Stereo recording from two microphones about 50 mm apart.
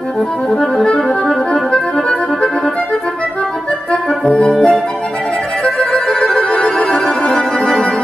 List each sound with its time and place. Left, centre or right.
0.6 s accordion: centre
3.9 s music: left
5.8 s music: centre